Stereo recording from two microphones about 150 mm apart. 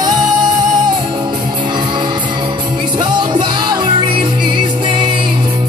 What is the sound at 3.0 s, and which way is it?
Music, 30° right (ahead or behind).